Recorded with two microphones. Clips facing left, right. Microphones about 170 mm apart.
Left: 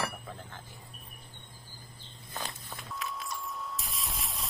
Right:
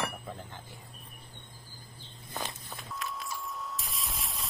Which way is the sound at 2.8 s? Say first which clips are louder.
Even; centre (ahead or behind).